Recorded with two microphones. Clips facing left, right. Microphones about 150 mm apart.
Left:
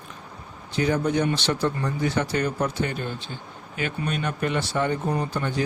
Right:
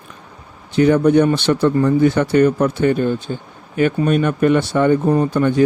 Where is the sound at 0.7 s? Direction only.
60° right (ahead or behind).